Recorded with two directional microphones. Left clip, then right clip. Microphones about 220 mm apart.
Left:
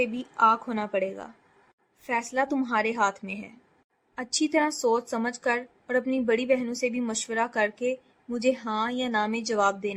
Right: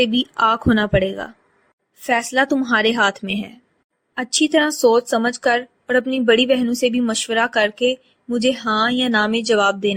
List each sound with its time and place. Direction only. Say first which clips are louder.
0.0 s a woman's voice: right 6 dB; 30° right (ahead or behind)